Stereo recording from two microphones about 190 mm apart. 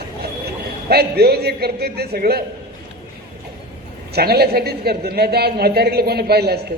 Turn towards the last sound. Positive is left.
turn(degrees=-55)  # may be behind; listen again after turning